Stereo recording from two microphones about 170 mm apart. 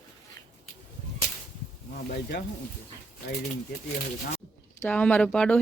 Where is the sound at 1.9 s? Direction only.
55° left (ahead or behind).